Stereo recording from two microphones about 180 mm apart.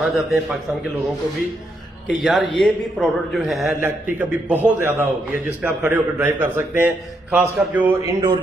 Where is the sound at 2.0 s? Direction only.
5° right (ahead or behind).